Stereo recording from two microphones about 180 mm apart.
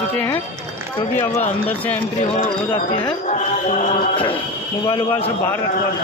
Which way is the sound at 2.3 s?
30° left (ahead or behind).